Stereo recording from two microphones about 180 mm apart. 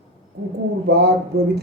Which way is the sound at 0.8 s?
65° right (ahead or behind).